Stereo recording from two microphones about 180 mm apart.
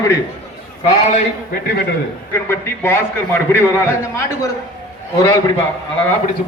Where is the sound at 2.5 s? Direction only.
15° left (ahead or behind).